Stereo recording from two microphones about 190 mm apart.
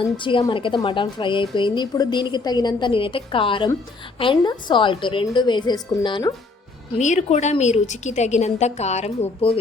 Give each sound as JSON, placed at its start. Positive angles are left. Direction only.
{"t": 0.2, "sound": "a woman's voice", "side_deg": 25}
{"t": 7.0, "sound": "a woman's voice", "side_deg": 40}